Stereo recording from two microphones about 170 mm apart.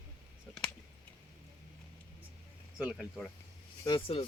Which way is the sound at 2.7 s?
Centre (ahead or behind).